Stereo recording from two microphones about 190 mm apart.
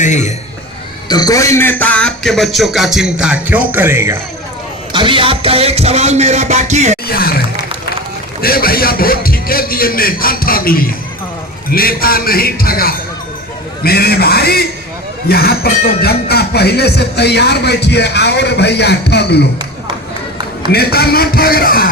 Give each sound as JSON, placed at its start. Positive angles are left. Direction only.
{"t": 0.0, "sound": "speech", "side_deg": 40}
{"t": 1.0, "sound": "a man's voice", "side_deg": 20}
{"t": 4.9, "sound": "speech", "side_deg": -25}
{"t": 7.1, "sound": "a man's voice", "side_deg": 55}
{"t": 20.7, "sound": "a man's voice", "side_deg": 55}